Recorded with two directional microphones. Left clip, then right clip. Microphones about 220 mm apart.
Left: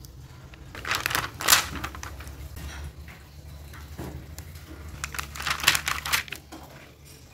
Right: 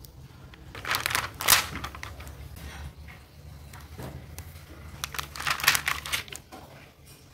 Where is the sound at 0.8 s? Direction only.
10° right (ahead or behind).